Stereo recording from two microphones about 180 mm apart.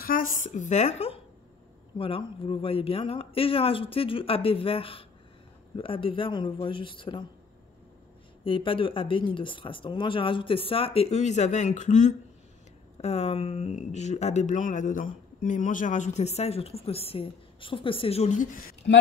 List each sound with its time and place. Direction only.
0.0 s a woman's voice: 50° left (ahead or behind); by 7.2 s 25° left (ahead or behind)
8.5 s speech: 30° left (ahead or behind); by 18.8 s 45° left (ahead or behind)